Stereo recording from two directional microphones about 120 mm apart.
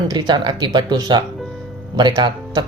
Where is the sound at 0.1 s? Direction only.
35° right (ahead or behind).